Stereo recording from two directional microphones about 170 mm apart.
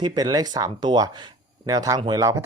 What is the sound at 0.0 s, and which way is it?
Speech, 25° right (ahead or behind).